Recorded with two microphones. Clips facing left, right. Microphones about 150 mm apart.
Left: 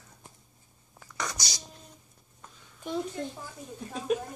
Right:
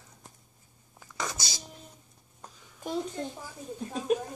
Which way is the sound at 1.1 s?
25° right (ahead or behind).